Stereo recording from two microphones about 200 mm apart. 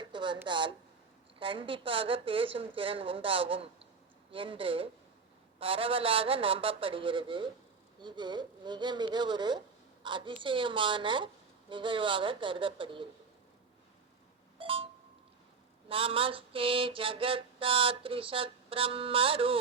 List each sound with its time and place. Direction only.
0.0 s a sound: 25° right (ahead or behind)
0.4 s mantra: 25° right (ahead or behind)
14.6 s beep: 25° right (ahead or behind)
15.9 s mantra: 25° right (ahead or behind)